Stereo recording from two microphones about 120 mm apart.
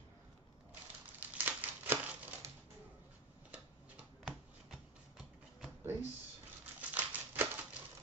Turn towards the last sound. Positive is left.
turn(degrees=-15)  # may be behind; listen again after turning